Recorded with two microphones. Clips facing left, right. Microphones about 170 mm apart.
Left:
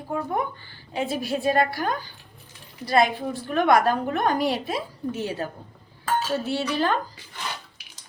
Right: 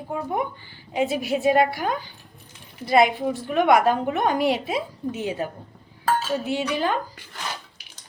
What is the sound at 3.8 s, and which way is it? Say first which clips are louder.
A woman's voice: right 2 dB; 20° right (ahead or behind).